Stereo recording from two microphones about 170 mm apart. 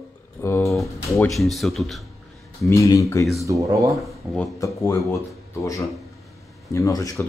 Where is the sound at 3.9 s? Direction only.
Centre (ahead or behind).